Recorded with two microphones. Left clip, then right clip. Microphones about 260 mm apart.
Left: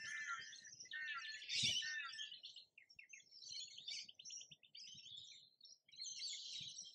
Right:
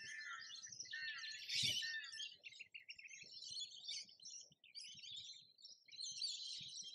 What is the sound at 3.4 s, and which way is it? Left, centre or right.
Bird, right.